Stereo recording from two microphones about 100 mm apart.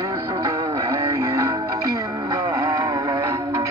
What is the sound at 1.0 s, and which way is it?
Music, 35° right (ahead or behind).